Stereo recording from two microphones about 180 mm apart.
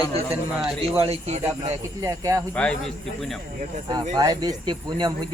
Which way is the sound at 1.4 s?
15° right (ahead or behind).